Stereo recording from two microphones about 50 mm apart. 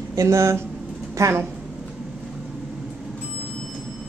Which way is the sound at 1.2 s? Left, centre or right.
Right.